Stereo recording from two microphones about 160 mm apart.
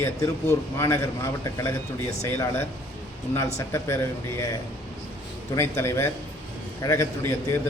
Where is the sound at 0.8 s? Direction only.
15° left (ahead or behind).